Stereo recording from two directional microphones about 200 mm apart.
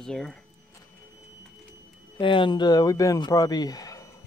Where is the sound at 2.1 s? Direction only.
25° left (ahead or behind).